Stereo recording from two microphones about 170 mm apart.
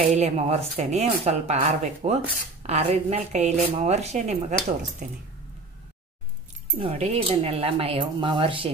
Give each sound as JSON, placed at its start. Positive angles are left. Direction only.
{"t": 0.0, "sound": "speech", "side_deg": -40}
{"t": 5.0, "sound": "speech", "side_deg": -55}
{"t": 6.8, "sound": "speech", "side_deg": -40}